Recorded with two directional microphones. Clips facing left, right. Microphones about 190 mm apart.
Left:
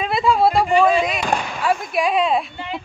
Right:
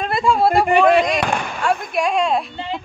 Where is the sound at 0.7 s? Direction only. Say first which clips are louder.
Right 2 dB; 60° right (ahead or behind).